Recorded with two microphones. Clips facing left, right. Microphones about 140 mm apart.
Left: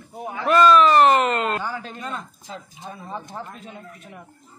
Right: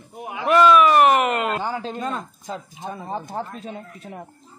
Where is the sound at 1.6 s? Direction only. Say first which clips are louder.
Right 4 dB; 25° right (ahead or behind).